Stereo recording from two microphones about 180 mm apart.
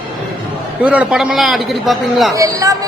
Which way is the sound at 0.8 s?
5° right (ahead or behind).